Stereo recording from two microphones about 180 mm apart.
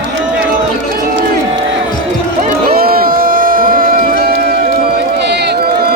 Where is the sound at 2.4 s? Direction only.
55° right (ahead or behind).